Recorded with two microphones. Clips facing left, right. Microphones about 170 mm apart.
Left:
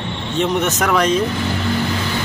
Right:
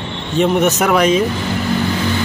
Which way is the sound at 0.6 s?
10° right (ahead or behind).